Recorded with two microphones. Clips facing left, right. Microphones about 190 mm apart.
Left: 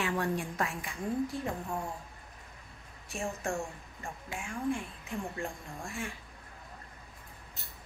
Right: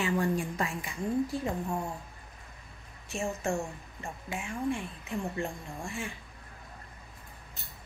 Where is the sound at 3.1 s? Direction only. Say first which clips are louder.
Right 3 dB; centre (ahead or behind).